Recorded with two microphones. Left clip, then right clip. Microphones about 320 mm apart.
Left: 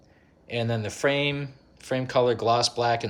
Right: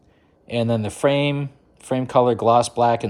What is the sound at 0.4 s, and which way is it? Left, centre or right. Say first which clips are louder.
Speech: right 6 dB; centre.